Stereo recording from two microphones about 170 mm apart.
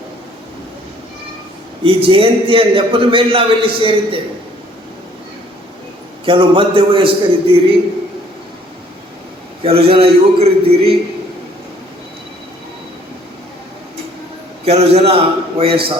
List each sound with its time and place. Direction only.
1.8 s a man's voice: 30° right (ahead or behind)
6.2 s a man's voice: 30° right (ahead or behind)
9.6 s a man's voice: 35° right (ahead or behind)
14.6 s a man's voice: 40° right (ahead or behind)